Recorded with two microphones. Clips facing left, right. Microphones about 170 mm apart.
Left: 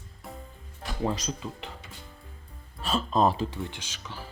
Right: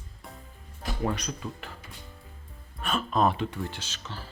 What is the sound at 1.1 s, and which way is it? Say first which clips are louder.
Speech: left 1 dB; 25° left (ahead or behind).